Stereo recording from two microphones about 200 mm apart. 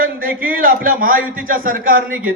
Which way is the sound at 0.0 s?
45° right (ahead or behind).